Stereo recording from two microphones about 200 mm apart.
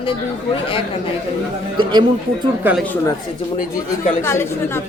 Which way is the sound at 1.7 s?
20° right (ahead or behind).